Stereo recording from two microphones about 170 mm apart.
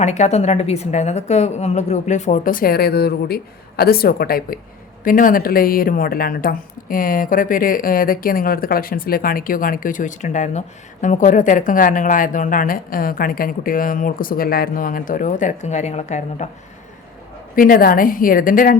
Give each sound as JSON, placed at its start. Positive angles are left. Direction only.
{"t": 0.0, "sound": "a woman's voice", "side_deg": 40}
{"t": 17.5, "sound": "a woman's voice", "side_deg": 55}